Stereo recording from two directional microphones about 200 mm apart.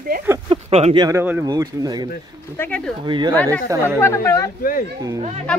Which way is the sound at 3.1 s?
25° right (ahead or behind).